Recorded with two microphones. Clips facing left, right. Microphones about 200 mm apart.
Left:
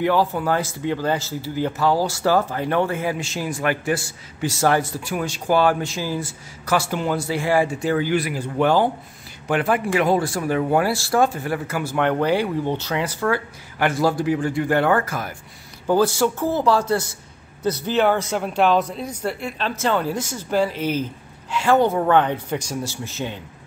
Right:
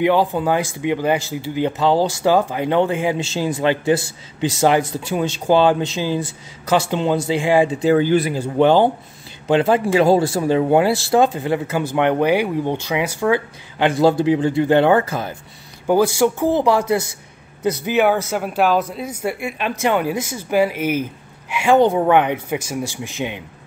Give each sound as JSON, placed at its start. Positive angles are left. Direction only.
{"t": 0.0, "sound": "speech", "side_deg": -20}
{"t": 15.9, "sound": "a man's voice", "side_deg": -15}